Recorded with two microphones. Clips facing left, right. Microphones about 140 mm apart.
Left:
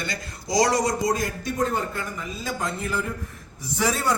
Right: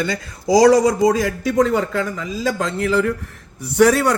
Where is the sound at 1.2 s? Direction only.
90° right.